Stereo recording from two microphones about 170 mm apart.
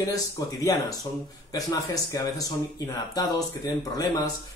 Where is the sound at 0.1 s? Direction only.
20° left (ahead or behind).